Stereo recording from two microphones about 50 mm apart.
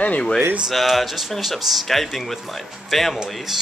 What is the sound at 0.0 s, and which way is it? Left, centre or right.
Speech, left.